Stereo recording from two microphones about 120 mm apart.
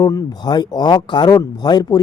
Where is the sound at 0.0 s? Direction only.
30° left (ahead or behind).